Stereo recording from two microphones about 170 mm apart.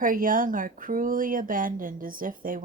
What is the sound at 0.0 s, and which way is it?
Speech, 55° right (ahead or behind).